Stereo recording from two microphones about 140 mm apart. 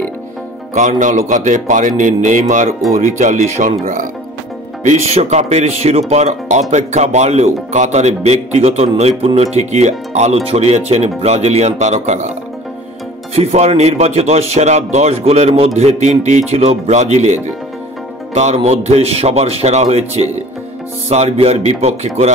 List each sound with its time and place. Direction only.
0.7 s speech: 60° right (ahead or behind)
4.8 s speech: 50° right (ahead or behind)
13.3 s speech: 50° right (ahead or behind)